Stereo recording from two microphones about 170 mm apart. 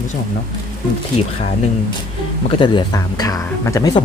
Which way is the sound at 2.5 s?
30° left (ahead or behind).